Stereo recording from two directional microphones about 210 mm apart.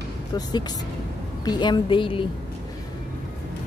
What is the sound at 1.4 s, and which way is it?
Speech, 20° left (ahead or behind).